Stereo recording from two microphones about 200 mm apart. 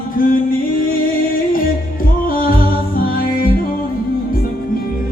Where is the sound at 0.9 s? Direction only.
45° left (ahead or behind).